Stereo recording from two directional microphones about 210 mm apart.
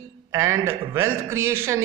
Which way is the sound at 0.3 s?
15° right (ahead or behind).